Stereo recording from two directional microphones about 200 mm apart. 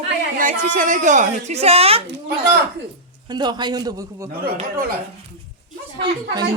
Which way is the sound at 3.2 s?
20° right (ahead or behind).